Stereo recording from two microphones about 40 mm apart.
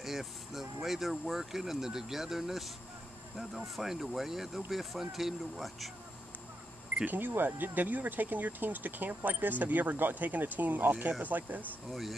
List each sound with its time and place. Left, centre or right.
0.0 s speech: centre
7.1 s speech: right
11.9 s speech: centre